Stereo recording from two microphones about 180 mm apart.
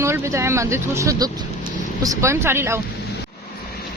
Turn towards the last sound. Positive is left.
turn(degrees=-15)  # may be behind; listen again after turning